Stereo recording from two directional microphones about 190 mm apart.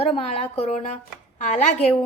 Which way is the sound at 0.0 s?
30° left (ahead or behind).